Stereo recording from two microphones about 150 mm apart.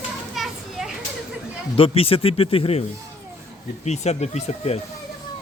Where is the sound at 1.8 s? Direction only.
40° left (ahead or behind).